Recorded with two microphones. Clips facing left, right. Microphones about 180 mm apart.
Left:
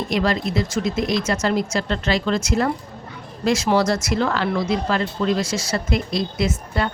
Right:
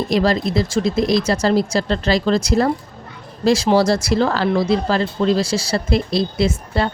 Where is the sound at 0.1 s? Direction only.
35° right (ahead or behind).